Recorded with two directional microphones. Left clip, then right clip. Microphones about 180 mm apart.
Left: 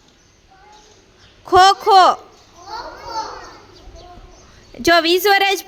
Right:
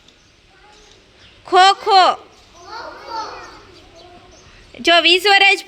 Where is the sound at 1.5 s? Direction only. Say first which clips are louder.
Left 1 dB; 25° left (ahead or behind).